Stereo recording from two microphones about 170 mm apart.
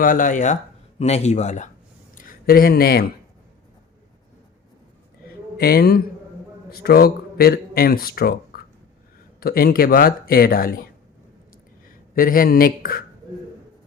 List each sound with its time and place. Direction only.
0.0 s speech: 50° left (ahead or behind)
2.1 s speech: 55° left (ahead or behind)
5.5 s a man's voice: 65° left (ahead or behind)
11.9 s speech: 55° left (ahead or behind)